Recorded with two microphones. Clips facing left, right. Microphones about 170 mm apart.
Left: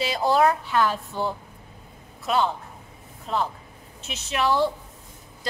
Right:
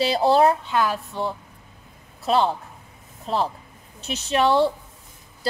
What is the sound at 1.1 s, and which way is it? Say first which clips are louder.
Speech: even; centre (ahead or behind).